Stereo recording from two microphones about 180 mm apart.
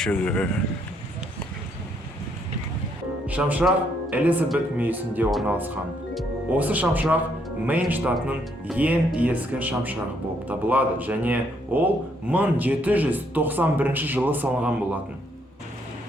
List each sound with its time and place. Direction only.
0.0 s speech: 5° left (ahead or behind)
3.2 s speech: 10° right (ahead or behind)